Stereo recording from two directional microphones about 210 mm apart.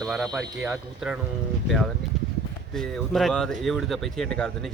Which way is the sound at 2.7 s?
5° left (ahead or behind).